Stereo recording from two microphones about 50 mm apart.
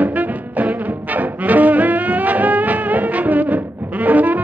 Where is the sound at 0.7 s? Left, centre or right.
Right.